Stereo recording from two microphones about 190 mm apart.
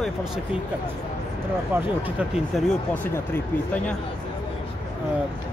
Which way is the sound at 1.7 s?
5° right (ahead or behind).